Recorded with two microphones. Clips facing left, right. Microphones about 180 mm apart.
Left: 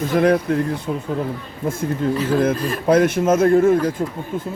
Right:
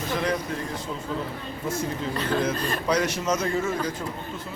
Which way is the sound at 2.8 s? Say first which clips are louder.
Left 11 dB; 50° left (ahead or behind).